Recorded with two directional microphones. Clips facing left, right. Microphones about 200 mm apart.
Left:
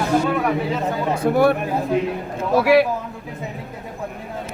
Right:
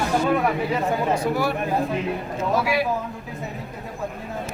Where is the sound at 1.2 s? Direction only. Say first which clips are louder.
Left 7 dB; 55° left (ahead or behind).